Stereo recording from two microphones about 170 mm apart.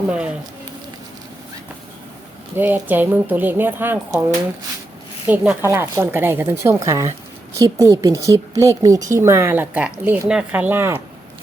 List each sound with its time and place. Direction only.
0.1 s speech: 5° right (ahead or behind)
2.6 s a woman's voice: 10° right (ahead or behind)
5.3 s a woman's voice: 10° right (ahead or behind)